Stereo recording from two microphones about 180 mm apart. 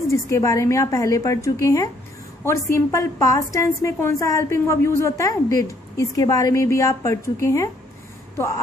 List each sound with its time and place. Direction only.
0.1 s a woman's voice: 15° left (ahead or behind)